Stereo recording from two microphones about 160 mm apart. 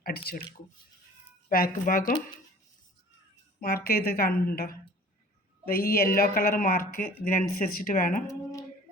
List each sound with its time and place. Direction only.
1.5 s speech: 60° left (ahead or behind)
3.6 s a woman's voice: 70° left (ahead or behind)